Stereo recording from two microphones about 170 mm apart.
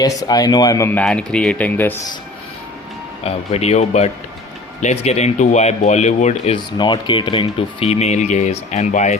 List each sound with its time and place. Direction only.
0.0 s speech: 20° left (ahead or behind)
3.2 s speech: 35° left (ahead or behind)
6.7 s speech: 30° left (ahead or behind); by 9.1 s 45° left (ahead or behind)